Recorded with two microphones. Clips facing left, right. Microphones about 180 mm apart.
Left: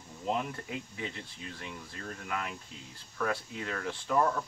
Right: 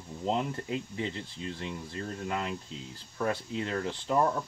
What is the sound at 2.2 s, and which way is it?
Speech, 25° right (ahead or behind).